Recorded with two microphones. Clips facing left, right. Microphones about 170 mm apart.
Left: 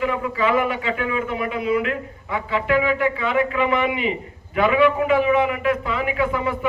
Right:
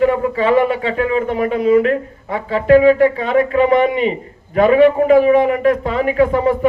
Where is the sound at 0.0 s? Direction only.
40° right (ahead or behind).